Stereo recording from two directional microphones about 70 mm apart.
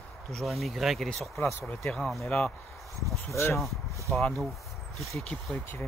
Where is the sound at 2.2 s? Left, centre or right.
Centre.